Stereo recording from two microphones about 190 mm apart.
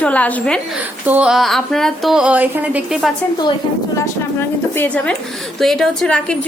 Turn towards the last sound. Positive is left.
turn(degrees=5)  # may be behind; listen again after turning